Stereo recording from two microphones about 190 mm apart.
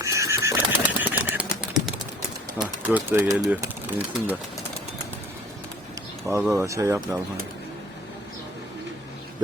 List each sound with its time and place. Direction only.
0.0 s a sound: 15° right (ahead or behind)
2.6 s speech: 10° right (ahead or behind)
6.3 s speech: 10° right (ahead or behind)